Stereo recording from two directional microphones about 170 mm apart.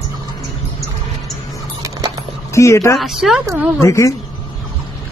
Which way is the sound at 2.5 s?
15° left (ahead or behind).